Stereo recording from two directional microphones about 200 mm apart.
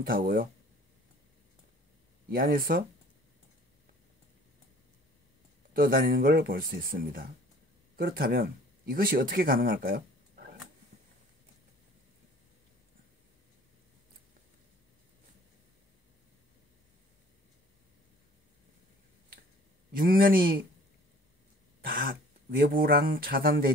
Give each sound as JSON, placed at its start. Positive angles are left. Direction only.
{"t": 0.0, "sound": "speech", "side_deg": -45}
{"t": 2.2, "sound": "speech", "side_deg": -45}
{"t": 5.7, "sound": "speech", "side_deg": -45}
{"t": 19.9, "sound": "speech", "side_deg": -45}
{"t": 21.8, "sound": "speech", "side_deg": -45}